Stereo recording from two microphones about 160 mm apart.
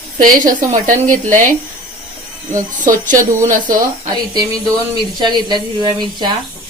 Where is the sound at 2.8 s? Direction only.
55° right (ahead or behind).